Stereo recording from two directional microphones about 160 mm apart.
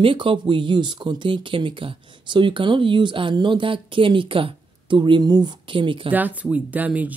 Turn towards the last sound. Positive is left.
turn(degrees=-10)  # may be behind; listen again after turning